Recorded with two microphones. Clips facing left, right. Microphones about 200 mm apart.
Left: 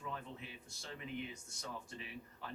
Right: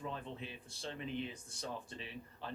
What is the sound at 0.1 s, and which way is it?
Speech, 30° right (ahead or behind).